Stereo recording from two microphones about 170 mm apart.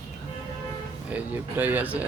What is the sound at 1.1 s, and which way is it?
Speech, 10° right (ahead or behind).